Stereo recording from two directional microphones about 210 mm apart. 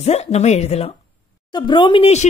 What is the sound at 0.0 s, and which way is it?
Speech, 30° left (ahead or behind).